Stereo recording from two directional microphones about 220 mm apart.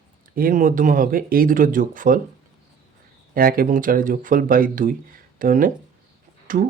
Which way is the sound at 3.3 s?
40° right (ahead or behind).